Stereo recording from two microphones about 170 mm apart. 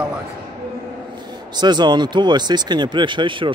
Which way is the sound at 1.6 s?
25° right (ahead or behind).